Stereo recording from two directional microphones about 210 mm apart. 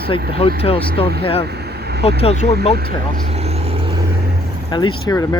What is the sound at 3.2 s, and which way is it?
Vehicle, 30° right (ahead or behind).